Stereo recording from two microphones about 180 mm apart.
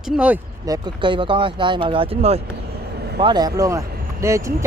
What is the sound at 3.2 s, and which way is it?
Speech, 25° right (ahead or behind).